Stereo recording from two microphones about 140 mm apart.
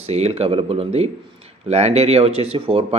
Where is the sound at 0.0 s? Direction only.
50° right (ahead or behind).